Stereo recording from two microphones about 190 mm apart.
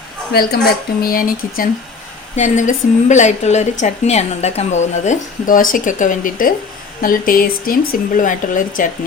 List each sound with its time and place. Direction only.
0.3 s a woman's voice: 55° left (ahead or behind)